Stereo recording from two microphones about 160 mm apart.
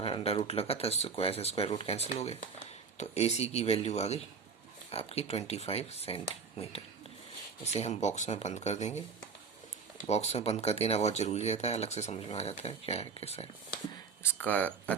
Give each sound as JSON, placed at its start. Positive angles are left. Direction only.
{"t": 0.0, "sound": "speech", "side_deg": 35}
{"t": 10.0, "sound": "speech", "side_deg": 45}
{"t": 14.2, "sound": "speech", "side_deg": 10}